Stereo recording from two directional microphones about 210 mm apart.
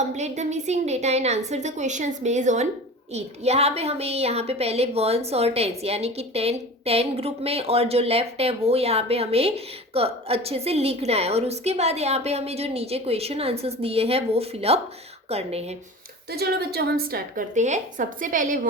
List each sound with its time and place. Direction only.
0.0 s a woman's voice: 35° right (ahead or behind)
16.3 s a woman's voice: 50° right (ahead or behind)